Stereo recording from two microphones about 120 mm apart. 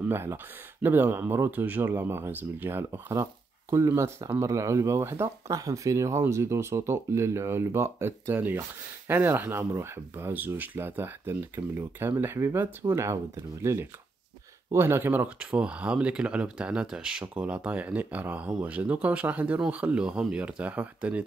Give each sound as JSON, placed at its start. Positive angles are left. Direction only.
{"t": 0.0, "sound": "speech", "side_deg": -20}